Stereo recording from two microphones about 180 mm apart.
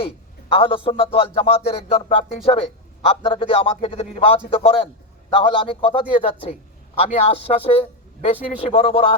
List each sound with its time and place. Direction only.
0.5 s a man's voice: 30° left (ahead or behind)